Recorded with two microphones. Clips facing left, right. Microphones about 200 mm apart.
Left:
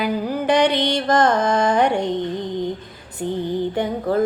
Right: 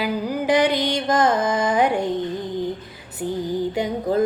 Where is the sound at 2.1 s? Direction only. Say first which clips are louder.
Left 1 dB; 20° left (ahead or behind).